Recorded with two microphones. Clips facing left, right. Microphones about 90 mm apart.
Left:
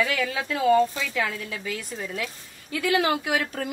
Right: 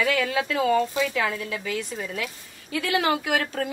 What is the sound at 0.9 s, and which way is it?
Speech, 30° right (ahead or behind).